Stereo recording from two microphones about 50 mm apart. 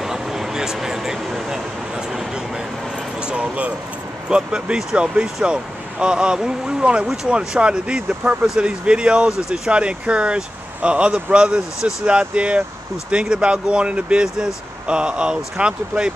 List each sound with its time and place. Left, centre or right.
0.0 s speech: centre
3.2 s speech: right